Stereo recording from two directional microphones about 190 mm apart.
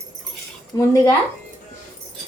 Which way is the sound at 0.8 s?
15° left (ahead or behind).